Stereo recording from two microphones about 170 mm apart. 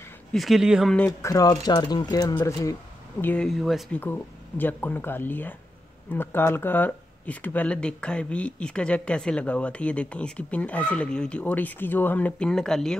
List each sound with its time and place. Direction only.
0.3 s speech: centre (ahead or behind)
0.9 s speech: 10° left (ahead or behind)
1.3 s speech: 20° left (ahead or behind)
3.4 s speech: centre (ahead or behind)